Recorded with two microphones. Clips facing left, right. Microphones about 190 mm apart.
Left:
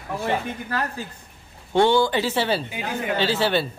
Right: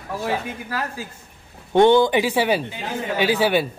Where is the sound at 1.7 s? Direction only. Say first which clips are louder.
Right 4 dB; 20° right (ahead or behind).